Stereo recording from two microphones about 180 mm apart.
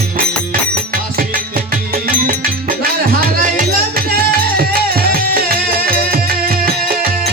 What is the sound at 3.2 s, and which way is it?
Music, 50° right (ahead or behind).